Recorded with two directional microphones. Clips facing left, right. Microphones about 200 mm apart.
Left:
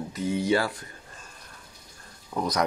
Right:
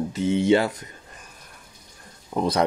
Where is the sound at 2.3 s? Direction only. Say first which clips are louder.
Right 5 dB; 30° right (ahead or behind).